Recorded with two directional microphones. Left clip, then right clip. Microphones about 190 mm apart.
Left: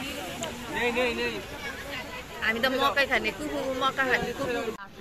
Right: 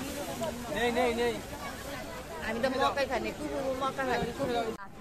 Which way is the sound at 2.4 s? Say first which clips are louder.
Left 4 dB; 30° left (ahead or behind).